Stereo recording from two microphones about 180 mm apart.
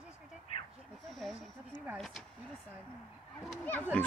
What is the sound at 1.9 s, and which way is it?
Speech, centre (ahead or behind).